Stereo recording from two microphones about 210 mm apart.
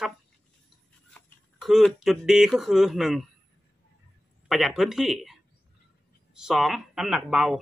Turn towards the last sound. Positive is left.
turn(degrees=0)  # may be behind; listen again after turning